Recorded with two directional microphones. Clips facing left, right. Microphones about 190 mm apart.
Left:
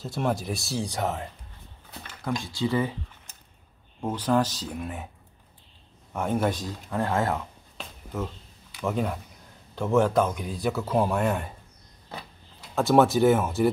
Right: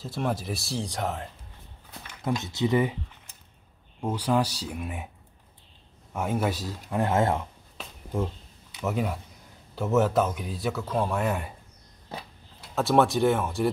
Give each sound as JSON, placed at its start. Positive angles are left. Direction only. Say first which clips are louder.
{"t": 0.0, "sound": "speech", "louder": "left 2 dB", "side_deg": 0}
{"t": 2.2, "sound": "speech", "louder": "right 1 dB", "side_deg": -20}
{"t": 4.1, "sound": "speech", "louder": "left 1 dB", "side_deg": -10}
{"t": 6.1, "sound": "speech", "louder": "left 2 dB", "side_deg": -5}
{"t": 7.0, "sound": "speech", "louder": "right 2 dB", "side_deg": -25}
{"t": 8.8, "sound": "speech", "louder": "left 1 dB", "side_deg": -5}
{"t": 12.7, "sound": "speech", "louder": "left 2 dB", "side_deg": 0}